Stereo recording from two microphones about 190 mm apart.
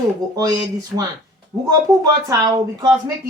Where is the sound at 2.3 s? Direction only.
20° right (ahead or behind).